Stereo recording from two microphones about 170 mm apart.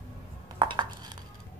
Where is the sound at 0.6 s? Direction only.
30° right (ahead or behind).